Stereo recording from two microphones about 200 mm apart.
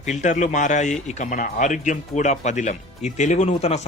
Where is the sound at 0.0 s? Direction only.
35° left (ahead or behind).